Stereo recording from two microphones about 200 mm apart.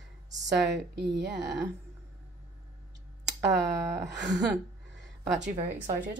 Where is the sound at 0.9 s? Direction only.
55° right (ahead or behind).